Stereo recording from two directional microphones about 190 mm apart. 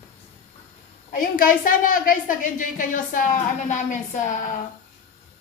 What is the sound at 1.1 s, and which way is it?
A woman's voice, 45° left (ahead or behind).